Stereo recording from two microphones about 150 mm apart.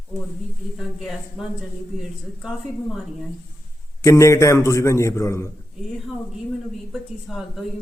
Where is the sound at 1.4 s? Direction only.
Centre (ahead or behind).